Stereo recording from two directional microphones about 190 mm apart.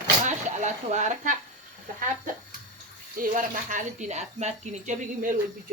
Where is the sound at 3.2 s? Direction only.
45° right (ahead or behind).